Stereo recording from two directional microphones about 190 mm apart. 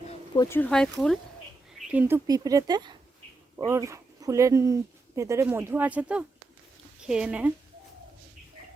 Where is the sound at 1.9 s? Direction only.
10° right (ahead or behind).